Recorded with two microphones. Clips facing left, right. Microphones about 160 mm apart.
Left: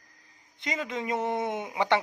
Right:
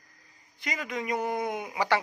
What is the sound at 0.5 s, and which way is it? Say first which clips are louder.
A man's voice: left 1 dB; 25° left (ahead or behind).